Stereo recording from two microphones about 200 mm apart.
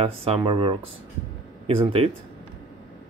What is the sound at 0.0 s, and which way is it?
Speech, 30° right (ahead or behind).